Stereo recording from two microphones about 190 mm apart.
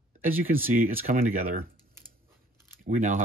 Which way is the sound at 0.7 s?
50° right (ahead or behind).